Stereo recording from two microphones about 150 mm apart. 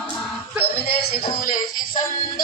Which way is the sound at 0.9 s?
90° left.